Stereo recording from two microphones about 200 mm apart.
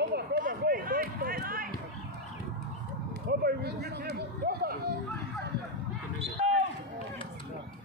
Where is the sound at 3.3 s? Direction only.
50° right (ahead or behind).